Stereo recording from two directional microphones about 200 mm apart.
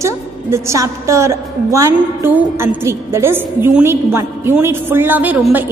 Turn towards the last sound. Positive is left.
turn(degrees=-10)  # may be behind; listen again after turning